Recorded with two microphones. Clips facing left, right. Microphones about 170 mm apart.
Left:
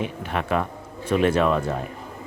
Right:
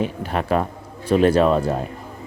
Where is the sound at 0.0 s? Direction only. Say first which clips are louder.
Right 4 dB; 35° right (ahead or behind).